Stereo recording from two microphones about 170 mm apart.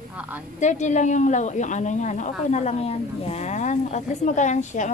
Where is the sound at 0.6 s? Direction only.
45° left (ahead or behind).